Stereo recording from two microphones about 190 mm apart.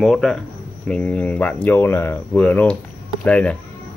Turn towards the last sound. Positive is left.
turn(degrees=5)  # may be behind; listen again after turning